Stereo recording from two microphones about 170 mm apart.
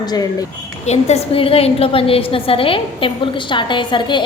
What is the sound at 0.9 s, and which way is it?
A woman's voice, 40° left (ahead or behind).